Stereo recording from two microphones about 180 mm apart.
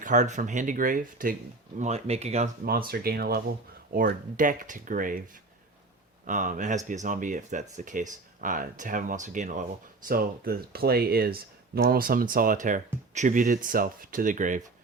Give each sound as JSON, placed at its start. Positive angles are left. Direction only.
{"t": 0.0, "sound": "speech", "side_deg": -45}
{"t": 1.8, "sound": "speech", "side_deg": -35}
{"t": 2.6, "sound": "speech", "side_deg": -55}
{"t": 6.2, "sound": "speech", "side_deg": -45}